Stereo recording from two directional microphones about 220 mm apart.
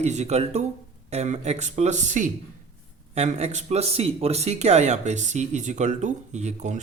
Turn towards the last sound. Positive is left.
turn(degrees=-35)  # may be behind; listen again after turning